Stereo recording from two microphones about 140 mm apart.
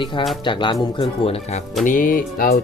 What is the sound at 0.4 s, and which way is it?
Speech, 35° left (ahead or behind).